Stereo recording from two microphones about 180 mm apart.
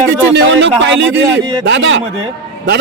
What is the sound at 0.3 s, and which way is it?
A man's voice, 85° right.